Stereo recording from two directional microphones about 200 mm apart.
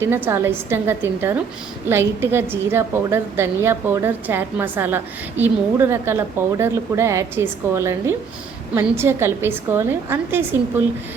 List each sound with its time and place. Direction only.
0.0 s a woman's voice: 10° right (ahead or behind)